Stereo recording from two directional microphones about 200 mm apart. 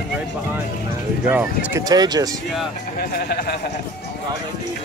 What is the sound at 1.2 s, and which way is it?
Speech, 10° right (ahead or behind).